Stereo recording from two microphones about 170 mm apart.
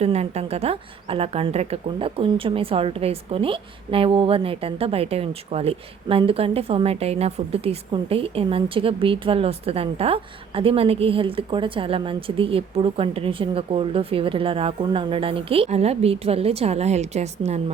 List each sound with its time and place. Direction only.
0.0 s a woman's voice: 40° right (ahead or behind)